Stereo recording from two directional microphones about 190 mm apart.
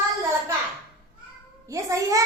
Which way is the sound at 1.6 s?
15° right (ahead or behind).